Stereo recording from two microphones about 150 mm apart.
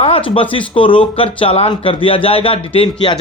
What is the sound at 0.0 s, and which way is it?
A man's voice, 35° left (ahead or behind).